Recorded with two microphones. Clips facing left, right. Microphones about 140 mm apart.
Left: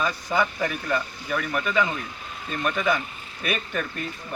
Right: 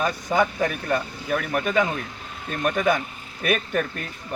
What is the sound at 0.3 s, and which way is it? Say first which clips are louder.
A man's voice: right 3 dB; 50° right (ahead or behind).